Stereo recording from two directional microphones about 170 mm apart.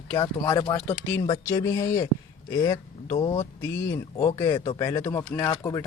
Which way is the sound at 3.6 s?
15° left (ahead or behind).